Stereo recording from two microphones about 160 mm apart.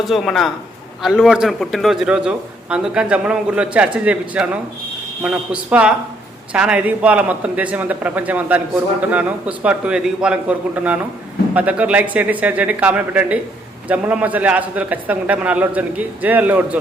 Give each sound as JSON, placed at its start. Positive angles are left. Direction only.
{"t": 0.0, "sound": "a man's voice", "side_deg": 0}